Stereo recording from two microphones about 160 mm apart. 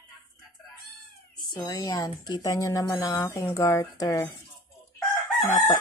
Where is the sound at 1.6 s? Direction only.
20° left (ahead or behind).